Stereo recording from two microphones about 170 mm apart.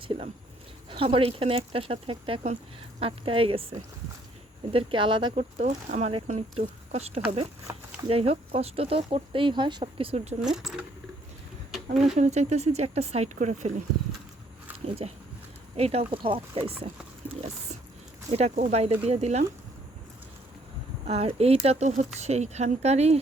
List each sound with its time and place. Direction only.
0.9 s speech: 30° right (ahead or behind)
5.3 s speech: 45° right (ahead or behind)
7.7 s speech: 15° right (ahead or behind)
8.0 s speech: 35° right (ahead or behind)
10.4 s speech: centre (ahead or behind)
11.7 s a sound: centre (ahead or behind)
12.1 s speech: 40° right (ahead or behind)
15.0 s speech: 40° right (ahead or behind)
21.1 s speech: 35° right (ahead or behind)